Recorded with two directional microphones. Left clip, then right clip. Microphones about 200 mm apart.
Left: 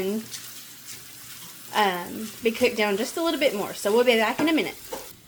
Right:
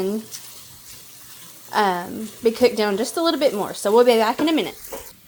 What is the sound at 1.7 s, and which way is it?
Speech, 25° right (ahead or behind).